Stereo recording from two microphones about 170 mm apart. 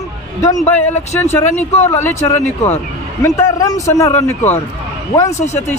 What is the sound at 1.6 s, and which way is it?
Speech, 40° left (ahead or behind).